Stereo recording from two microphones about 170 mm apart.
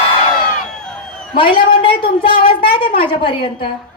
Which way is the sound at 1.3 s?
30° left (ahead or behind).